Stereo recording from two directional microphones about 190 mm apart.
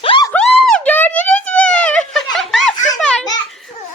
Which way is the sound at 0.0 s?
30° left (ahead or behind).